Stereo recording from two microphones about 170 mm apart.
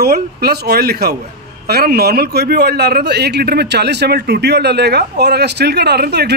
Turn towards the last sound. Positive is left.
turn(degrees=-75)  # may be behind; listen again after turning